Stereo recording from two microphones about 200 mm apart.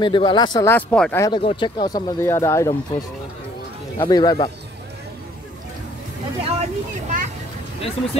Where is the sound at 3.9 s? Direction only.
20° left (ahead or behind).